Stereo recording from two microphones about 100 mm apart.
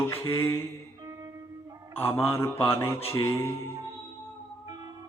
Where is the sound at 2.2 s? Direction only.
25° left (ahead or behind).